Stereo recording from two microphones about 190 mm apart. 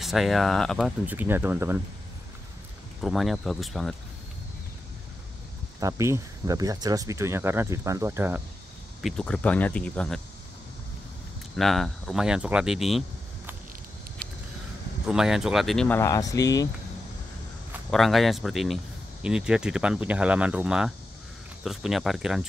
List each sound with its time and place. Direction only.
0.0 s speech: centre (ahead or behind)
3.0 s speech: centre (ahead or behind)
5.8 s speech: 15° right (ahead or behind)
9.0 s speech: 5° left (ahead or behind)
11.5 s speech: centre (ahead or behind)
15.0 s speech: 5° right (ahead or behind)
16.0 s speech: 15° left (ahead or behind)
17.9 s speech: centre (ahead or behind)